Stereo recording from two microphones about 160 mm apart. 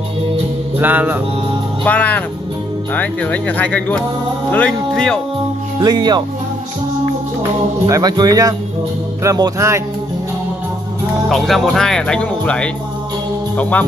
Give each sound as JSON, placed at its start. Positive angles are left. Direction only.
{"t": 0.7, "sound": "music", "side_deg": -10}
{"t": 1.9, "sound": "speech", "side_deg": 10}
{"t": 5.8, "sound": "speech", "side_deg": -25}
{"t": 7.8, "sound": "speech", "side_deg": -25}
{"t": 11.2, "sound": "speech", "side_deg": 0}